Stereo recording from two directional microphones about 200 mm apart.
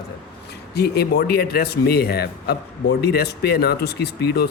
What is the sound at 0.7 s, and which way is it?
A man's voice, 55° left (ahead or behind).